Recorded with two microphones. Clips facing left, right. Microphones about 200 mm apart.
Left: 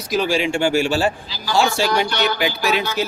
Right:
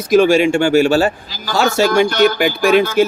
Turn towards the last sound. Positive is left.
turn(degrees=-50)  # may be behind; listen again after turning